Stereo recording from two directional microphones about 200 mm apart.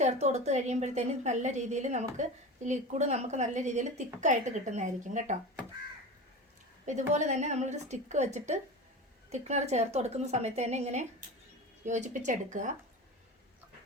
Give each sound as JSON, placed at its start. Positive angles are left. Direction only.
{"t": 0.0, "sound": "a woman's voice", "side_deg": -35}
{"t": 7.1, "sound": "a woman's voice", "side_deg": -35}